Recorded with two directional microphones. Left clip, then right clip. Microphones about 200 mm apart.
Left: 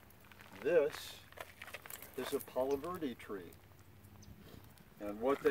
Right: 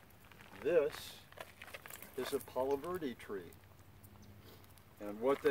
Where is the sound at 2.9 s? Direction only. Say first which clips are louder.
Right 1 dB; 35° right (ahead or behind).